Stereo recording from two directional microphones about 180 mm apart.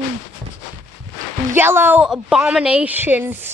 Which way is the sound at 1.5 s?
10° right (ahead or behind).